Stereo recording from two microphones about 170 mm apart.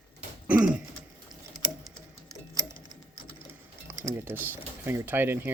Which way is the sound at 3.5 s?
15° right (ahead or behind).